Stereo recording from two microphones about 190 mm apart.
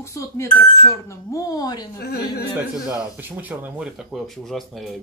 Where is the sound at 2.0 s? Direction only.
55° left (ahead or behind).